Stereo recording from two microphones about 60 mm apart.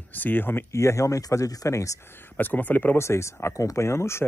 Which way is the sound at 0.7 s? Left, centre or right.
Left.